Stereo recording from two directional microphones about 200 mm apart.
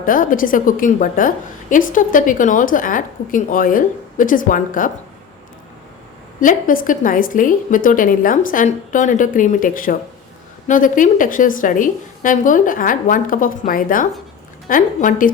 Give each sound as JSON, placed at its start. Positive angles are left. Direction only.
{"t": 0.0, "sound": "a woman's voice", "side_deg": 45}
{"t": 6.4, "sound": "a woman's voice", "side_deg": 40}